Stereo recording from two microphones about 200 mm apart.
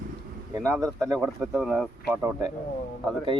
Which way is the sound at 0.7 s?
15° right (ahead or behind).